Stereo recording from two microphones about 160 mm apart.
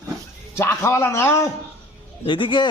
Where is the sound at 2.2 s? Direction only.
30° left (ahead or behind).